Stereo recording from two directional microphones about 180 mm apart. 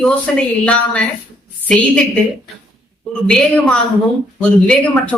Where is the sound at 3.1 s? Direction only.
5° left (ahead or behind).